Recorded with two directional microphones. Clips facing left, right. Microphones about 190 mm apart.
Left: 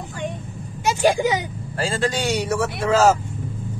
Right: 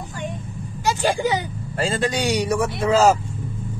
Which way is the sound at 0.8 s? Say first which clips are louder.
Left 2 dB; 15° left (ahead or behind).